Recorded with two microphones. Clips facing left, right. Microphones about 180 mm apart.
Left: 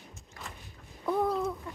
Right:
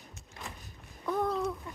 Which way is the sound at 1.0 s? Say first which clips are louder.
Left 2 dB; 5° left (ahead or behind).